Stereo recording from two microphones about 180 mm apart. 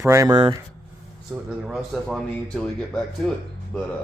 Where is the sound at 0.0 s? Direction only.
15° right (ahead or behind).